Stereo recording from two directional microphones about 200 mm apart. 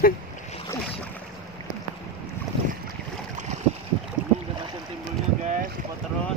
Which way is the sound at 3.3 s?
35° right (ahead or behind).